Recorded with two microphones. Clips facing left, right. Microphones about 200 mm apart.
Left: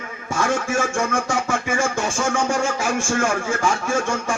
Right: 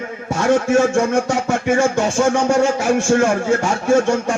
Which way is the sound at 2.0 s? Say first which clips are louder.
Right 6 dB; 40° right (ahead or behind).